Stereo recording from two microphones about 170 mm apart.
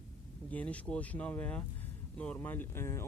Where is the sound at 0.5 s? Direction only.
10° left (ahead or behind).